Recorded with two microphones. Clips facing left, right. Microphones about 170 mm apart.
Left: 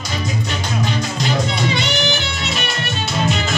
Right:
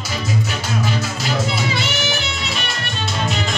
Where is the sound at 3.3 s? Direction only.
Centre (ahead or behind).